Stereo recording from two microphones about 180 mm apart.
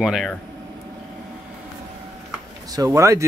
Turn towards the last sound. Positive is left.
turn(degrees=-15)  # may be behind; listen again after turning